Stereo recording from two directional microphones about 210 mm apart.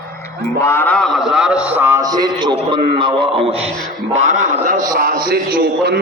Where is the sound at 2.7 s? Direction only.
25° right (ahead or behind).